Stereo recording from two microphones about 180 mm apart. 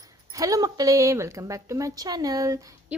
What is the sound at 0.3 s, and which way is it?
A woman's voice, 20° right (ahead or behind).